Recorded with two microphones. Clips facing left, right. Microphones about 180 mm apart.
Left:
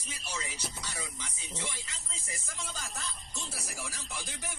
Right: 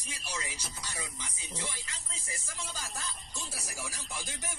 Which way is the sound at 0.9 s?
10° right (ahead or behind).